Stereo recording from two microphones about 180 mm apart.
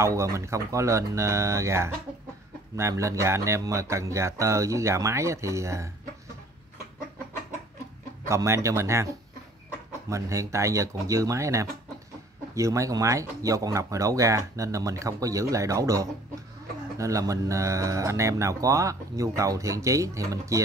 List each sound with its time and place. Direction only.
0.0 s speech: 15° right (ahead or behind)
8.3 s speech: 15° right (ahead or behind)